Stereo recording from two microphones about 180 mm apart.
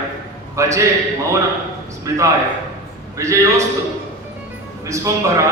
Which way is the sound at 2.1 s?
20° right (ahead or behind).